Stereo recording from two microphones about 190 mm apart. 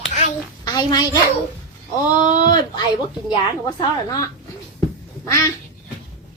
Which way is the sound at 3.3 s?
20° left (ahead or behind).